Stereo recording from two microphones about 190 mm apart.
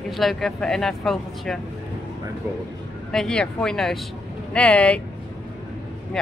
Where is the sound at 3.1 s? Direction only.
5° left (ahead or behind).